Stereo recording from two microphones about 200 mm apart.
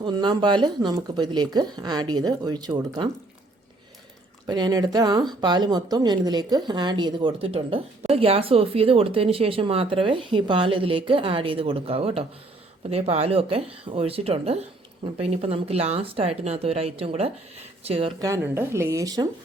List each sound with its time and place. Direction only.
0.0 s speech: 25° right (ahead or behind)
4.4 s speech: 20° right (ahead or behind)
18.2 s speech: 15° right (ahead or behind)